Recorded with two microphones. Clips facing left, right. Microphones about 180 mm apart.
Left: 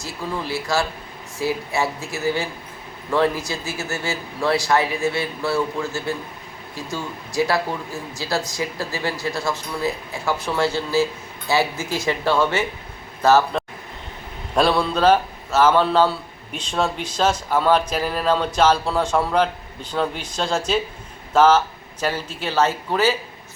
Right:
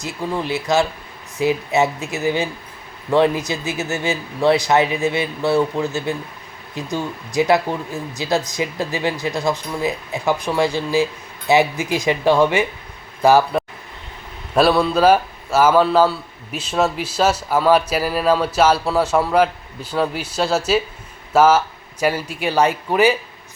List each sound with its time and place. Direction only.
0.0 s a man's voice: 20° right (ahead or behind)